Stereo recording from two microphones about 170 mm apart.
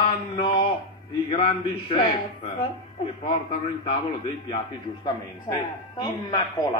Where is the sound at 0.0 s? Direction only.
30° left (ahead or behind).